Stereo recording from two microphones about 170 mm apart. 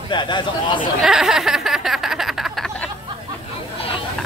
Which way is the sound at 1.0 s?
Centre (ahead or behind).